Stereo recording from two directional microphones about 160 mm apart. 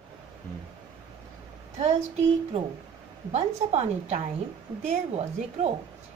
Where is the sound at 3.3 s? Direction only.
40° right (ahead or behind).